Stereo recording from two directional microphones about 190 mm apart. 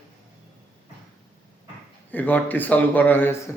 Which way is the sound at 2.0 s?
10° left (ahead or behind).